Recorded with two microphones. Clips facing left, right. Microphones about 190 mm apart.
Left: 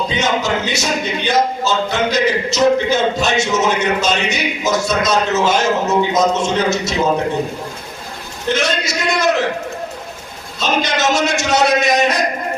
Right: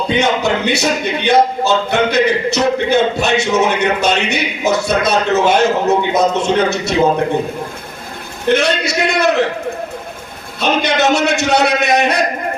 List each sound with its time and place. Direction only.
0.1 s speech: 60° right (ahead or behind)
8.4 s speech: 60° right (ahead or behind)
10.6 s speech: 60° right (ahead or behind)